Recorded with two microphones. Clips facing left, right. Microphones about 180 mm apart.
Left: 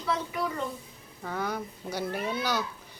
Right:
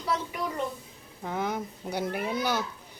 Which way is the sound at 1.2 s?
15° right (ahead or behind).